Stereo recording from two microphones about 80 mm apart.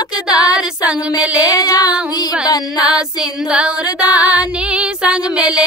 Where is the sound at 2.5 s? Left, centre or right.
Left.